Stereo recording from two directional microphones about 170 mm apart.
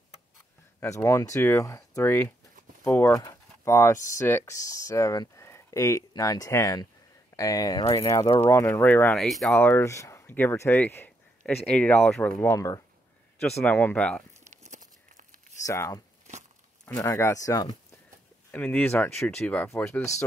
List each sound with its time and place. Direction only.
0.7 s speech: 20° left (ahead or behind); by 9.6 s 5° left (ahead or behind)
9.6 s speech: 15° left (ahead or behind)
14.5 s walk: 45° right (ahead or behind)
15.6 s speech: 20° left (ahead or behind)
18.5 s speech: 10° left (ahead or behind)